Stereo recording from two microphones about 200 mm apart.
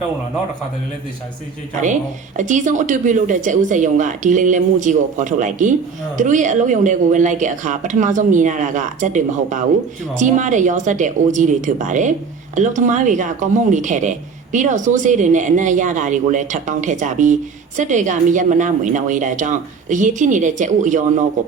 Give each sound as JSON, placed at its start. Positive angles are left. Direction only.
{"t": 1.8, "sound": "speech", "side_deg": -40}